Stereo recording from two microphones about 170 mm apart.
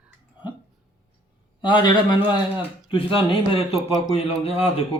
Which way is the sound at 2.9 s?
30° left (ahead or behind).